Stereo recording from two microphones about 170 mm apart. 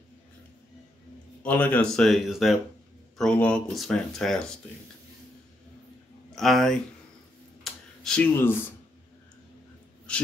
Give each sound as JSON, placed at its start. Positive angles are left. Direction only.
{"t": 1.4, "sound": "speech", "side_deg": 10}
{"t": 6.3, "sound": "speech", "side_deg": 0}
{"t": 7.6, "sound": "a sound", "side_deg": 5}